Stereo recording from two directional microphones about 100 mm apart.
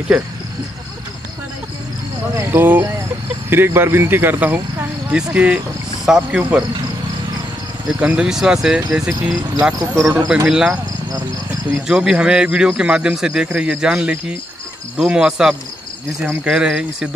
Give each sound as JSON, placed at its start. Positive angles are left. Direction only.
{"t": 2.5, "sound": "speech", "side_deg": -20}
{"t": 8.0, "sound": "speech", "side_deg": -10}
{"t": 10.5, "sound": "speech", "side_deg": -5}
{"t": 11.9, "sound": "speech", "side_deg": -10}